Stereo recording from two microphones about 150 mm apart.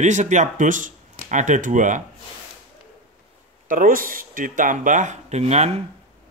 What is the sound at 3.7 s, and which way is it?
Speech, 65° right (ahead or behind).